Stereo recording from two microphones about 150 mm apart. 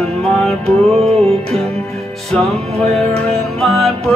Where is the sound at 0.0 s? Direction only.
Centre (ahead or behind).